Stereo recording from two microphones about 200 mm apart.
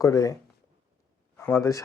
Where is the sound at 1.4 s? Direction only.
5° left (ahead or behind).